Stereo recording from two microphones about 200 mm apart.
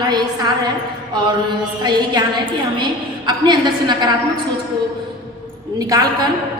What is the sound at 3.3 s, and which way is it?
Speech, 20° right (ahead or behind).